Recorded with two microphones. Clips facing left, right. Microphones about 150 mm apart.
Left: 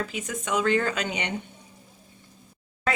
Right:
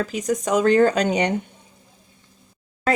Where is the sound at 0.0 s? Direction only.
40° right (ahead or behind).